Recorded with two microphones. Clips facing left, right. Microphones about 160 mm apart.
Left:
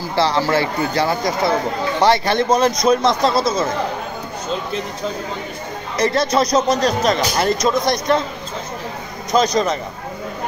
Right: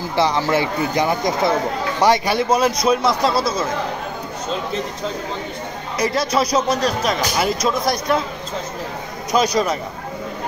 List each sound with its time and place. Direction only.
0.1 s speech: 15° right (ahead or behind)
5.9 s speech: 5° right (ahead or behind)
9.3 s speech: 10° right (ahead or behind)